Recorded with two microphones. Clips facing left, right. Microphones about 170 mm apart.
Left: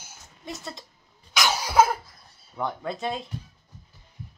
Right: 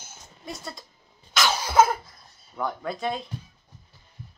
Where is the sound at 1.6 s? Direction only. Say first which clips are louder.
Right 1 dB; 10° left (ahead or behind).